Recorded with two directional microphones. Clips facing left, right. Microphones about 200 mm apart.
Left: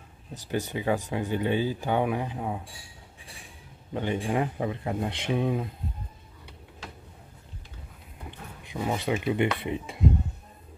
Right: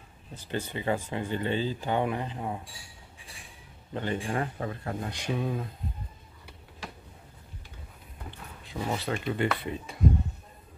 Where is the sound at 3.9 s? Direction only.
15° left (ahead or behind).